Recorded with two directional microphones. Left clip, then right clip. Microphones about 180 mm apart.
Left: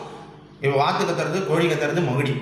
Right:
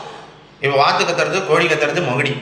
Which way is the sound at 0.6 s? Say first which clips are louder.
Right 6 dB; 15° left (ahead or behind).